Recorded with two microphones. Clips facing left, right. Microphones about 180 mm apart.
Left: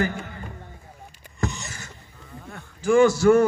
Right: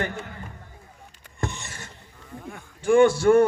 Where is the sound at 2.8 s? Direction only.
55° right (ahead or behind).